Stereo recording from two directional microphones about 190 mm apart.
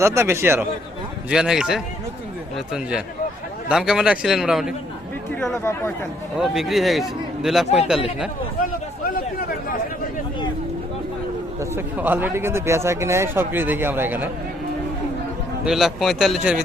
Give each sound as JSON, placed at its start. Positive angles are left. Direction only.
{"t": 0.0, "sound": "a man's voice", "side_deg": -15}
{"t": 3.7, "sound": "a man's voice", "side_deg": -5}
{"t": 11.7, "sound": "a man's voice", "side_deg": -10}
{"t": 15.6, "sound": "a man's voice", "side_deg": 0}